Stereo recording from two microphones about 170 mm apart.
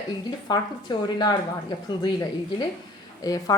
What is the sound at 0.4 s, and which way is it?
A woman's voice, 25° left (ahead or behind).